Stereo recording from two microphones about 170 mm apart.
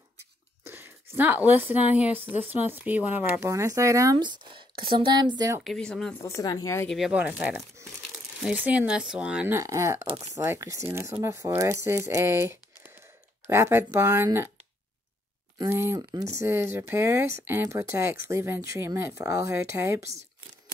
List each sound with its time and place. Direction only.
0.7 s a woman's voice: 15° right (ahead or behind)
5.6 s speech: 5° left (ahead or behind)
6.2 s speech: 20° left (ahead or behind)
6.9 s speech: 5° right (ahead or behind)
15.5 s speech: 15° right (ahead or behind)